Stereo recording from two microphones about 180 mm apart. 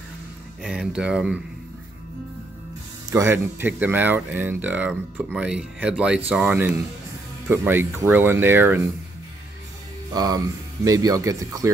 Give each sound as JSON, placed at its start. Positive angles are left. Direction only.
{"t": 0.6, "sound": "speech", "side_deg": -5}
{"t": 3.1, "sound": "speech", "side_deg": -15}
{"t": 10.1, "sound": "speech", "side_deg": -20}